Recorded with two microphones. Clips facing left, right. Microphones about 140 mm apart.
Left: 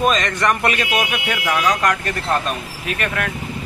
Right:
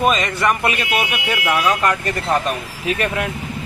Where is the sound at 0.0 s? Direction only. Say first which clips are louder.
Right 1 dB; 5° right (ahead or behind).